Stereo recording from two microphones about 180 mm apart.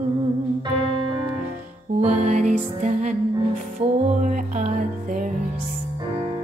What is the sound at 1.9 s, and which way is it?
Music, 40° right (ahead or behind).